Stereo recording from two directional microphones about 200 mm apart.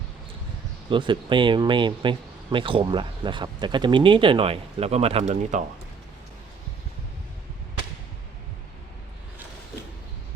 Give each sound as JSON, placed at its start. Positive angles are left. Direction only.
{"t": 0.9, "sound": "speech", "side_deg": -25}